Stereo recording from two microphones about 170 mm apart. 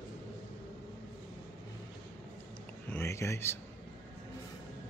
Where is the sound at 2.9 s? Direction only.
15° left (ahead or behind).